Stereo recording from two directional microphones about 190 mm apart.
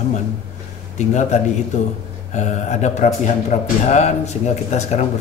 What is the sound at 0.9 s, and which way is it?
A man's voice, 40° left (ahead or behind).